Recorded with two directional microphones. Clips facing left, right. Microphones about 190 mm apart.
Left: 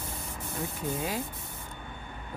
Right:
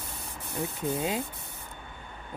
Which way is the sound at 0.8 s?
25° right (ahead or behind).